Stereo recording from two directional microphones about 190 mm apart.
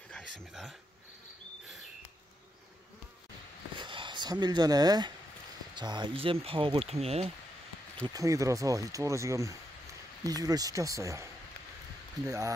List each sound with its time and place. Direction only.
3.7 s a sound: 25° right (ahead or behind)
5.8 s speech: 25° right (ahead or behind)
8.1 s speech: 15° right (ahead or behind)
12.3 s speech: 15° right (ahead or behind)